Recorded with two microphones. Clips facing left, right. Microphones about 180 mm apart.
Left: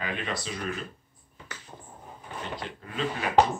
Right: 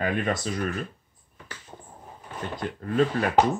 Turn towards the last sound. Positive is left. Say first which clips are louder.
# right 8 dB
turn(degrees=-50)  # may be behind; listen again after turning